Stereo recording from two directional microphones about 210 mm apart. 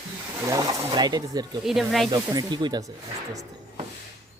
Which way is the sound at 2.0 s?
20° right (ahead or behind).